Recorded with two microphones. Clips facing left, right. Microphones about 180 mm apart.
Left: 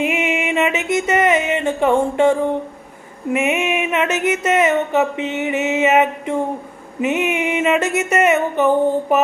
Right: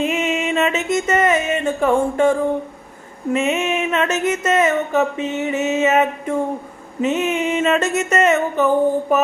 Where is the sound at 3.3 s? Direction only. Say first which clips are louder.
Left 1 dB; 15° left (ahead or behind).